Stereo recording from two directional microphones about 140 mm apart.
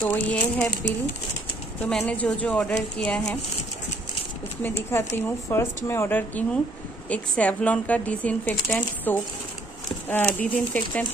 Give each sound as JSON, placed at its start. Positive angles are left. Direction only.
{"t": 0.0, "sound": "speech", "side_deg": 10}
{"t": 1.8, "sound": "speech", "side_deg": 5}
{"t": 4.6, "sound": "speech", "side_deg": 15}